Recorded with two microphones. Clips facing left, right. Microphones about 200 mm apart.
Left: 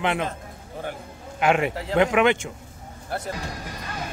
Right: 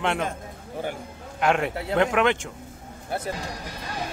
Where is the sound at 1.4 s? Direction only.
5° left (ahead or behind).